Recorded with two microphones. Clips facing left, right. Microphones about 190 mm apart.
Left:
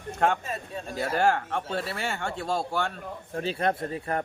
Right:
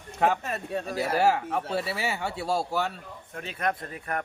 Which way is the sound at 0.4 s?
65° right (ahead or behind).